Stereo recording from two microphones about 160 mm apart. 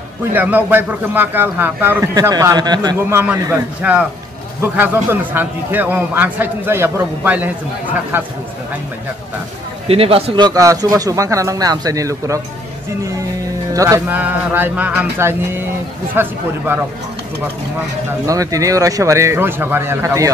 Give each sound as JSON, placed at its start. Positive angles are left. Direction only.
{"t": 0.2, "sound": "a man's voice", "side_deg": -10}
{"t": 9.8, "sound": "speech", "side_deg": -35}
{"t": 13.7, "sound": "a man's voice", "side_deg": -20}
{"t": 18.2, "sound": "speech", "side_deg": -20}